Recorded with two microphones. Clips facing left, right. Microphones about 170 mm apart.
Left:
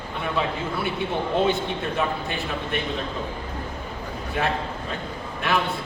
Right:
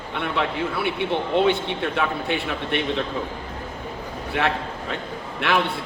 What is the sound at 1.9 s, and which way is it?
Speech, 70° right (ahead or behind).